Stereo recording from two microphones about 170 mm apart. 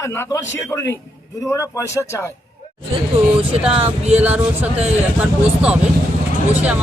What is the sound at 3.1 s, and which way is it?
Speech, 35° right (ahead or behind).